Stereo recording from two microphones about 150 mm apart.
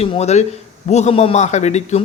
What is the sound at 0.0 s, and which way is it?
A man's voice, 45° left (ahead or behind).